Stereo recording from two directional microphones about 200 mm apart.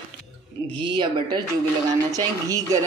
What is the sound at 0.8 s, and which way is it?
A woman's voice, 25° right (ahead or behind).